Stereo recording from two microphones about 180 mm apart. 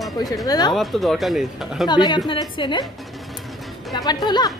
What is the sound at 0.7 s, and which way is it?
Speech, centre (ahead or behind).